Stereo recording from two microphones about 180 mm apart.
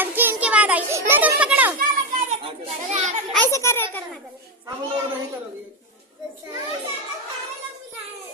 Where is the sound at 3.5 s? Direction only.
15° left (ahead or behind).